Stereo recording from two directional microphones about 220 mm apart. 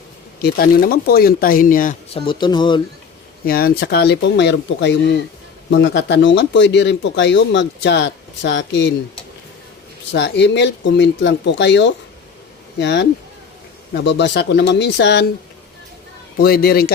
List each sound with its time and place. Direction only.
0.4 s speech: 45° left (ahead or behind)
2.1 s speech: 25° left (ahead or behind)
3.4 s speech: 45° left (ahead or behind)
10.1 s speech: 55° left (ahead or behind)
16.4 s speech: 45° left (ahead or behind)